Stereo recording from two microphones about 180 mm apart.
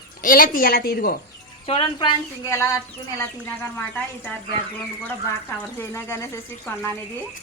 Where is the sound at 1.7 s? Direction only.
30° left (ahead or behind).